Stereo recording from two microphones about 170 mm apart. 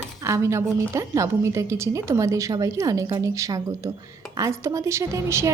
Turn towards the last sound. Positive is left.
turn(degrees=-15)  # may be behind; listen again after turning